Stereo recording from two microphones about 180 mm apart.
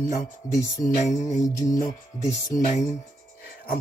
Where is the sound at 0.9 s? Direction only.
40° left (ahead or behind).